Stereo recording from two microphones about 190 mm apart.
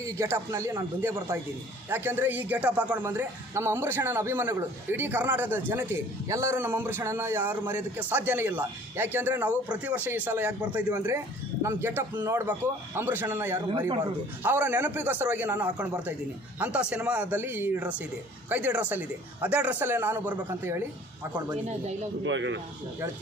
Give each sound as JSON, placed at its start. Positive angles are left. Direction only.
{"t": 0.0, "sound": "a man's voice", "side_deg": -15}
{"t": 13.7, "sound": "speech", "side_deg": -25}
{"t": 14.4, "sound": "a man's voice", "side_deg": -10}
{"t": 21.5, "sound": "speech", "side_deg": -35}
{"t": 22.2, "sound": "speech", "side_deg": -75}